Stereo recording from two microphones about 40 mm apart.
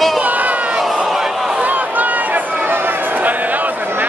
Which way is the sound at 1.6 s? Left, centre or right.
Right.